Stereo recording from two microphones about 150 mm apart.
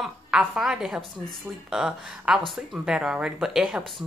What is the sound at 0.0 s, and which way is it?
A woman's voice, centre (ahead or behind).